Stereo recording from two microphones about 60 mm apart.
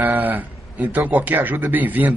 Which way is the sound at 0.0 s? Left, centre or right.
Right.